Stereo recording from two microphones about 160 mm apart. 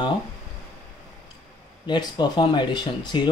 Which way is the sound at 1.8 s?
25° left (ahead or behind).